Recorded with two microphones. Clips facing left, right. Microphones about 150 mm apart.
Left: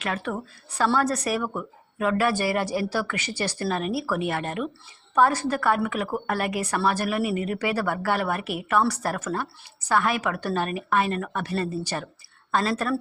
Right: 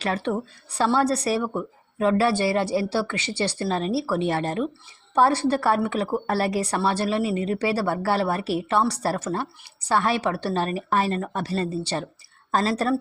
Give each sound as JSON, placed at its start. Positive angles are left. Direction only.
{"t": 0.0, "sound": "speech", "side_deg": -35}